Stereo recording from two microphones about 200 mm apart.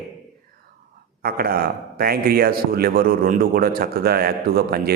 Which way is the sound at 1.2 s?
50° right (ahead or behind).